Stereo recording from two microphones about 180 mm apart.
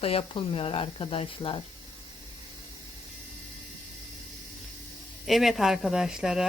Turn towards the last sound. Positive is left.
turn(degrees=-5)  # may be behind; listen again after turning